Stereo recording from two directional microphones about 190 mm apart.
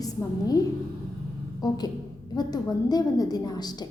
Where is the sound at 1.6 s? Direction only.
20° left (ahead or behind).